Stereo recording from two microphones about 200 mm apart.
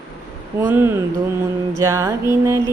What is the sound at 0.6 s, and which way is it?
Mantra, 10° right (ahead or behind).